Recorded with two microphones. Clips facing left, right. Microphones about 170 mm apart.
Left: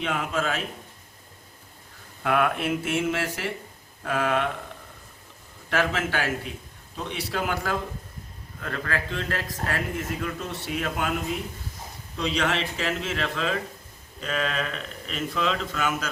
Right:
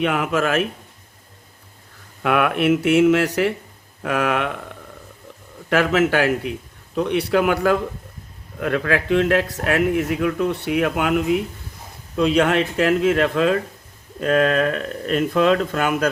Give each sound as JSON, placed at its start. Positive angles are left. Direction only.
{"t": 0.0, "sound": "speech", "side_deg": -65}
{"t": 2.2, "sound": "speech", "side_deg": -65}
{"t": 5.6, "sound": "a man's voice", "side_deg": -65}
{"t": 12.1, "sound": "speech", "side_deg": -55}